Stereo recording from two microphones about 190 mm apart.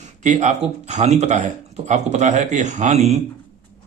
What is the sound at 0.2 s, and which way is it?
Speech, 40° right (ahead or behind).